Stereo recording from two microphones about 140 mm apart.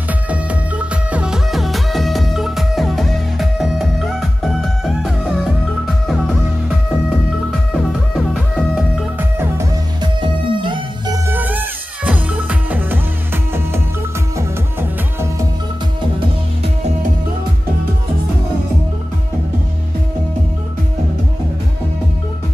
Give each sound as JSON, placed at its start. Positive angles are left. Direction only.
{"t": 0.3, "sound": "music", "side_deg": -10}
{"t": 10.2, "sound": "music", "side_deg": -35}
{"t": 11.2, "sound": "music", "side_deg": -15}